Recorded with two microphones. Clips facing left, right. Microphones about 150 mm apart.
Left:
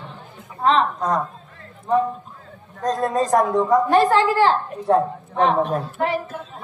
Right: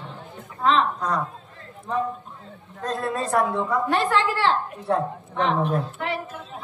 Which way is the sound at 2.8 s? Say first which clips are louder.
Left 6 dB; 35° left (ahead or behind).